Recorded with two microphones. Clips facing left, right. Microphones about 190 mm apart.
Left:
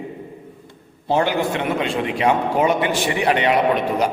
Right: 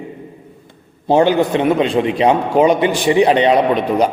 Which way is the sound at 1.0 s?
20° right (ahead or behind).